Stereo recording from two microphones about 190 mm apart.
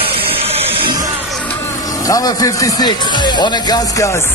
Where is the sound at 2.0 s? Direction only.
20° left (ahead or behind).